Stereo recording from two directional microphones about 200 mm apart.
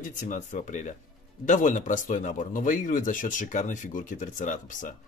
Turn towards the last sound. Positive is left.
turn(degrees=40)  # may be behind; listen again after turning